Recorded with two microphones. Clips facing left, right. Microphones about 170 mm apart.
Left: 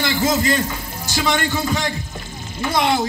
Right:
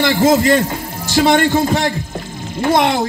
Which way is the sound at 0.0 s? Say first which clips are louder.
Right 7 dB; 55° right (ahead or behind).